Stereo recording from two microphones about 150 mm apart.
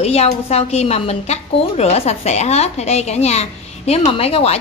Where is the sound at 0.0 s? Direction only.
45° left (ahead or behind).